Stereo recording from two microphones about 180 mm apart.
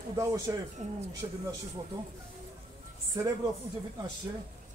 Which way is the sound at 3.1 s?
20° right (ahead or behind).